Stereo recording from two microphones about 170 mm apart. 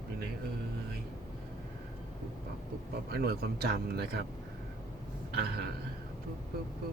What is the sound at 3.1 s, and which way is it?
Speech, 65° right (ahead or behind).